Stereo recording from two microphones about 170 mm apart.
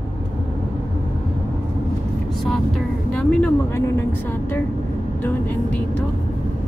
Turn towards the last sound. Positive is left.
turn(degrees=10)  # may be behind; listen again after turning